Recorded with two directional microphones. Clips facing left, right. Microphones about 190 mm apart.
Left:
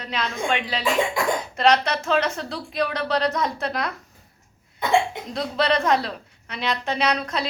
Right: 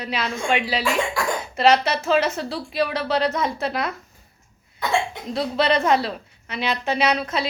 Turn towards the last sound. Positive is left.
turn(degrees=-5)  # may be behind; listen again after turning